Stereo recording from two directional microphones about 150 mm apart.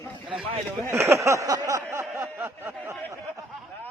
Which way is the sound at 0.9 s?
20° right (ahead or behind).